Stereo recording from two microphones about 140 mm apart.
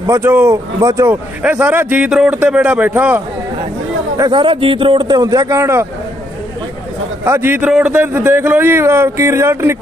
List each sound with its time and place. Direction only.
0.0 s a man's voice: 20° right (ahead or behind)
4.2 s a man's voice: 35° right (ahead or behind)
7.2 s a man's voice: 15° right (ahead or behind)